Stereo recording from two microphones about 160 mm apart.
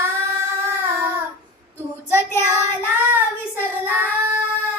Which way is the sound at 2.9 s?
10° right (ahead or behind).